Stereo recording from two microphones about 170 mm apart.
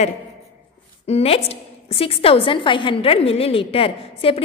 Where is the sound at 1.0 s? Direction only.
35° left (ahead or behind).